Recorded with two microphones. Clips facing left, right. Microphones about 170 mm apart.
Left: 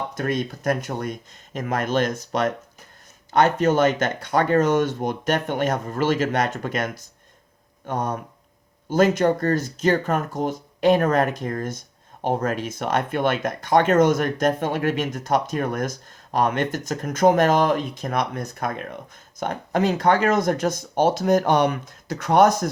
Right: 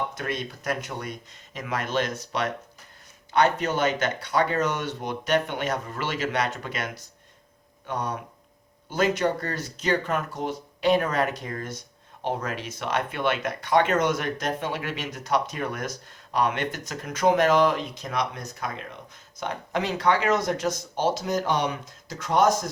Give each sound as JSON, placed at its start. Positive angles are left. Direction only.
{"t": 0.2, "sound": "speech", "side_deg": 50}